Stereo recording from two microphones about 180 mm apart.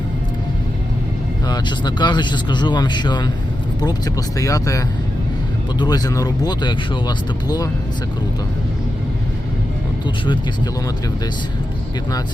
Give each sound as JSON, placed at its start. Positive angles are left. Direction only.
{"t": 1.5, "sound": "speech", "side_deg": 25}
{"t": 5.8, "sound": "speech", "side_deg": 20}